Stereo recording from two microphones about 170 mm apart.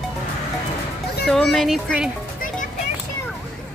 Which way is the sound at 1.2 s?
Centre (ahead or behind).